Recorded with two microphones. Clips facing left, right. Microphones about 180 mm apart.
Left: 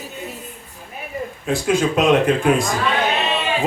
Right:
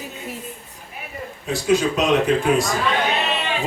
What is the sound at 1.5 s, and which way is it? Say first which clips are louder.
Speech: even; 55° left (ahead or behind).